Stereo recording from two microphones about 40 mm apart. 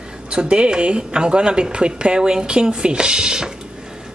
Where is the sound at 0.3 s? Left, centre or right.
Right.